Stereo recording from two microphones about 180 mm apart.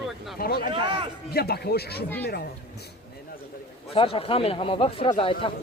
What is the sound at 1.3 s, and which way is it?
Speech, 60° left (ahead or behind).